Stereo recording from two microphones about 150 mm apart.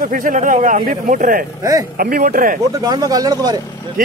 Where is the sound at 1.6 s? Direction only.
20° right (ahead or behind).